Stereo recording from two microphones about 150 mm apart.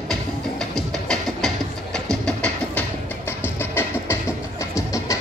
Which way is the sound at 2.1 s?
5° left (ahead or behind).